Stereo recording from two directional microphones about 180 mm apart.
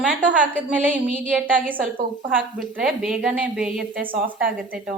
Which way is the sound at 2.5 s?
Centre (ahead or behind).